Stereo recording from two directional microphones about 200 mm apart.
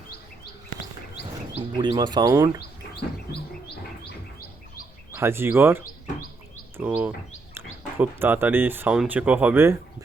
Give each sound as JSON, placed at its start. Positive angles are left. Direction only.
{"t": 1.5, "sound": "speech", "side_deg": -25}
{"t": 5.1, "sound": "speech", "side_deg": -10}